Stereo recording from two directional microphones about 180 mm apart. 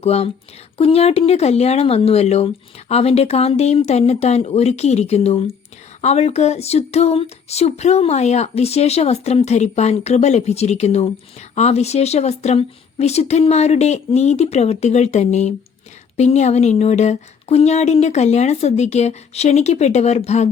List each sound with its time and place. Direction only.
0.0 s speech: 35° left (ahead or behind)